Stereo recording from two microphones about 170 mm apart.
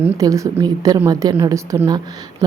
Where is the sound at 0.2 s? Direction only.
20° right (ahead or behind).